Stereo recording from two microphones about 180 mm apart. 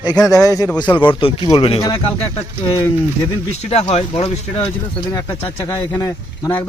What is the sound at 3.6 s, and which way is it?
Speech, 35° left (ahead or behind).